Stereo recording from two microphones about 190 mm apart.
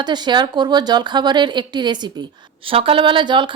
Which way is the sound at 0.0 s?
20° right (ahead or behind).